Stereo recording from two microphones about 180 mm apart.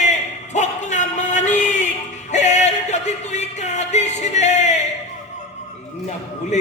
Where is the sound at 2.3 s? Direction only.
40° left (ahead or behind).